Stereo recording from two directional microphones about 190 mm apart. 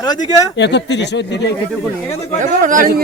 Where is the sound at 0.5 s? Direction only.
65° left (ahead or behind).